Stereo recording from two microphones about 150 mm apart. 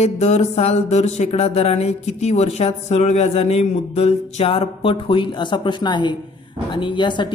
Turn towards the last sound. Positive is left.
turn(degrees=30)  # may be behind; listen again after turning